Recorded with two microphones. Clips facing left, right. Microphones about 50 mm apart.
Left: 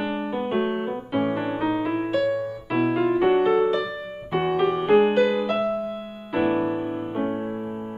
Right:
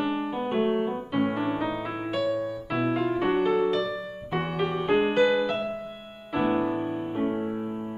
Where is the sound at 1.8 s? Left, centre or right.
Centre.